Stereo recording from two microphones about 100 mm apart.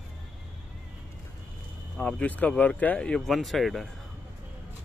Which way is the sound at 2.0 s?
10° left (ahead or behind).